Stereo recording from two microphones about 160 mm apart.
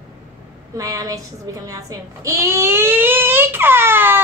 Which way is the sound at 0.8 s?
20° right (ahead or behind).